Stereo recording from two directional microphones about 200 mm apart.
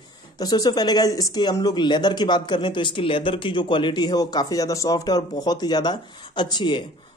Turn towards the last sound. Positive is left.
turn(degrees=20)  # may be behind; listen again after turning